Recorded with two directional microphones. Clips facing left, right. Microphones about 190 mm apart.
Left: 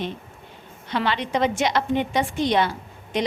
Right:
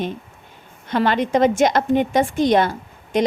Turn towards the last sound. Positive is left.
turn(degrees=-45)  # may be behind; listen again after turning